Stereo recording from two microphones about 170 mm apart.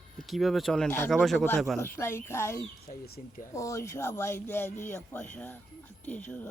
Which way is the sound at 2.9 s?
45° left (ahead or behind).